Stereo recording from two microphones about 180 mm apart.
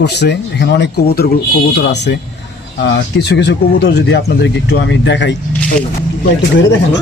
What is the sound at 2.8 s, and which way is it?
Speech, 75° left (ahead or behind).